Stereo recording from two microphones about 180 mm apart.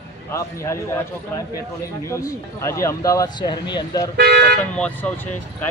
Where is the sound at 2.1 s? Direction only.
15° left (ahead or behind).